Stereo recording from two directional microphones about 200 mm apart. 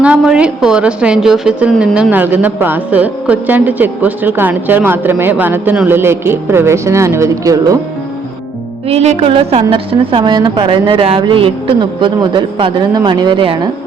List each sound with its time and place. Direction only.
0.0 s a woman's voice: 5° right (ahead or behind)
8.9 s a woman's voice: 30° right (ahead or behind)